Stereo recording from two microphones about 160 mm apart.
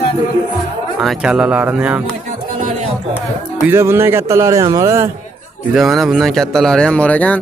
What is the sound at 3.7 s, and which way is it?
Speech, 15° right (ahead or behind).